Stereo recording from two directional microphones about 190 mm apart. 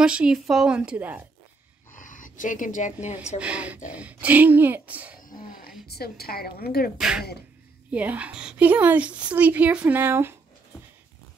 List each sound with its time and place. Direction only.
0.0 s a woman's voice: 5° right (ahead or behind)
2.0 s speech: 45° left (ahead or behind)
3.3 s a woman's voice: 5° right (ahead or behind)
5.4 s a sound: 50° left (ahead or behind)
5.9 s a woman's voice: 55° left (ahead or behind)
7.0 s a woman's voice: 5° right (ahead or behind)